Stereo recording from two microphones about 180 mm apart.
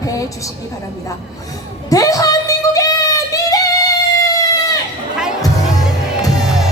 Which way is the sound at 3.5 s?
20° left (ahead or behind).